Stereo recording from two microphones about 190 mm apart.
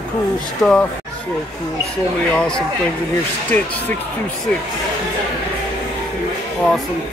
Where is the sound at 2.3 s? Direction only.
5° left (ahead or behind).